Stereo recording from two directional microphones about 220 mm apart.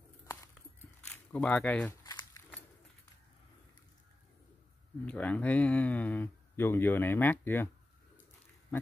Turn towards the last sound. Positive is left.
turn(degrees=10)  # may be behind; listen again after turning